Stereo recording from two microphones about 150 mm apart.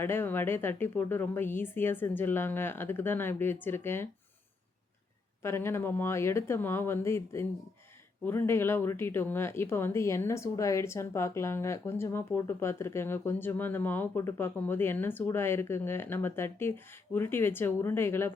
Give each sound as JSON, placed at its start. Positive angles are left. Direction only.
{"t": 0.0, "sound": "speech", "side_deg": 15}
{"t": 5.4, "sound": "speech", "side_deg": 15}